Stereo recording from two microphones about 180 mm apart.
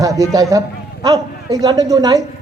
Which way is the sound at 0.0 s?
20° right (ahead or behind).